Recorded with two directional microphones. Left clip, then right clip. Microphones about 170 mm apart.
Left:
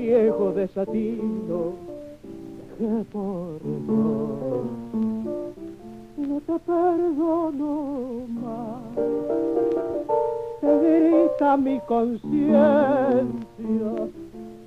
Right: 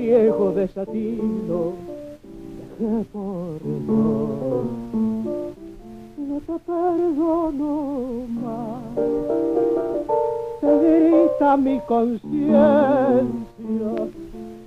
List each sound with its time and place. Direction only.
0.0 s music: 30° right (ahead or behind)
2.8 s music: 25° right (ahead or behind)
6.5 s music: 25° right (ahead or behind)